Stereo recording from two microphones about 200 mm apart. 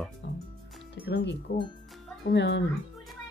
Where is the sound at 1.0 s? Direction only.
55° left (ahead or behind).